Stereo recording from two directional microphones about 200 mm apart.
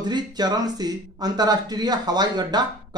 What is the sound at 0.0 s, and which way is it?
Speech, 20° right (ahead or behind).